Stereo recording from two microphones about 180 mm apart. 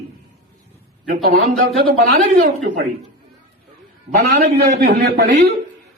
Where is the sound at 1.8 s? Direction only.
50° right (ahead or behind).